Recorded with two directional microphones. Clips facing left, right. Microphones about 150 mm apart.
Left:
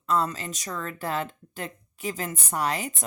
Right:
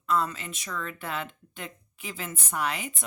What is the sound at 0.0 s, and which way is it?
Speech, 35° left (ahead or behind).